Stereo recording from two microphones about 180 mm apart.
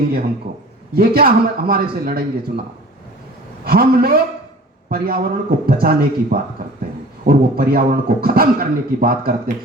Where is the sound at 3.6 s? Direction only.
55° right (ahead or behind).